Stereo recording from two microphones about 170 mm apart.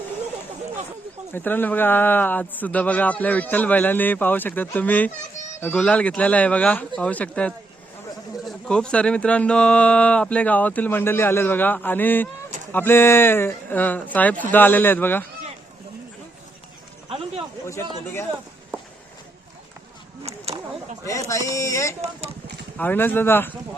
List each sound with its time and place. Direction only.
1.3 s speech: 10° left (ahead or behind)
17.1 s a sound: 35° right (ahead or behind)
20.2 s a sound: 35° right (ahead or behind)
21.0 s speech: 20° left (ahead or behind)
22.0 s speech: 35° right (ahead or behind)
22.8 s speech: 10° left (ahead or behind)